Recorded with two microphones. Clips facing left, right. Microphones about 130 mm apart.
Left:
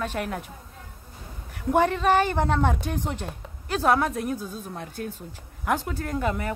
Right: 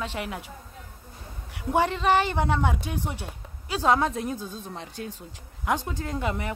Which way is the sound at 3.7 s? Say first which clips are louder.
Left 1 dB; 15° right (ahead or behind).